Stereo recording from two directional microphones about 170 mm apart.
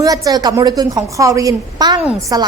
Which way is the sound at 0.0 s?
20° right (ahead or behind).